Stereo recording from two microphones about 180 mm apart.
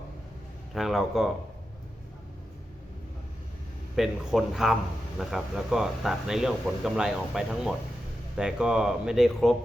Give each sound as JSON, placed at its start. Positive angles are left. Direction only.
{"t": 0.7, "sound": "speech", "side_deg": 0}
{"t": 3.9, "sound": "speech", "side_deg": -5}